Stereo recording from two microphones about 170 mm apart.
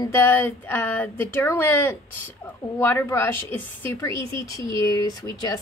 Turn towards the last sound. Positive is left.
turn(degrees=20)  # may be behind; listen again after turning